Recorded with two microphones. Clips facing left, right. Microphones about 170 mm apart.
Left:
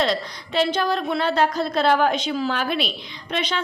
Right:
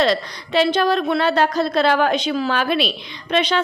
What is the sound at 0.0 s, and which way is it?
A woman's voice, 75° right (ahead or behind).